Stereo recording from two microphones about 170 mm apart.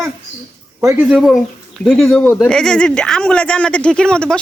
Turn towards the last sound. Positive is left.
turn(degrees=5)  # may be behind; listen again after turning